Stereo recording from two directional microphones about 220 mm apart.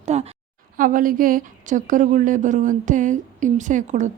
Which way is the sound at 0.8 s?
40° right (ahead or behind).